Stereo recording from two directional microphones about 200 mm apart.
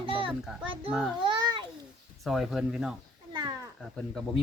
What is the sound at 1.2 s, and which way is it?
Babbling, 20° right (ahead or behind).